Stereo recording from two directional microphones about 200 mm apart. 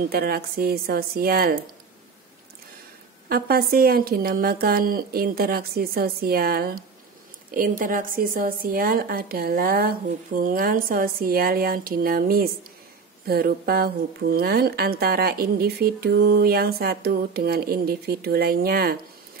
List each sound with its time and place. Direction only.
0.1 s speech: 50° right (ahead or behind)
3.3 s speech: 50° right (ahead or behind)